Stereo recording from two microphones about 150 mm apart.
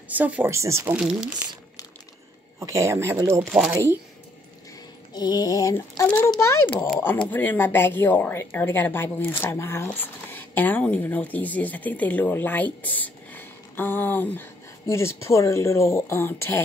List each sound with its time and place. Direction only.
0.1 s speech: 10° right (ahead or behind)
0.9 s speech: 5° right (ahead or behind)
2.6 s speech: 20° right (ahead or behind)
5.1 s a sound: 25° left (ahead or behind)
6.0 s speech: 10° left (ahead or behind)